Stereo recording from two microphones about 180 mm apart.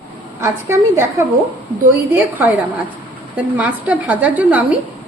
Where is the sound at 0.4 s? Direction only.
15° right (ahead or behind).